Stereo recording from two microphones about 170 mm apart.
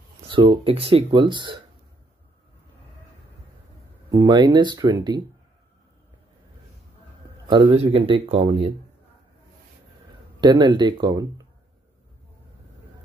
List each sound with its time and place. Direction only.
0.3 s speech: 30° right (ahead or behind)
4.1 s speech: 25° right (ahead or behind)
7.4 s speech: 30° right (ahead or behind)
10.4 s speech: 25° right (ahead or behind)